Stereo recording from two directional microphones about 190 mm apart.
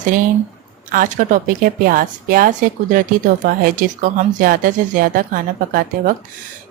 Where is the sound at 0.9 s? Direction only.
45° right (ahead or behind).